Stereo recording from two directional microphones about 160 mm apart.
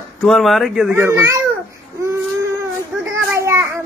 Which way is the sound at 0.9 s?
15° right (ahead or behind).